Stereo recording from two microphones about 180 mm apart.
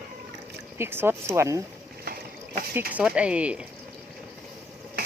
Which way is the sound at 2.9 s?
5° right (ahead or behind).